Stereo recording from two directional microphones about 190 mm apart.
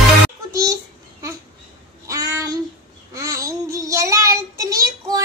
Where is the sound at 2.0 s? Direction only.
15° right (ahead or behind).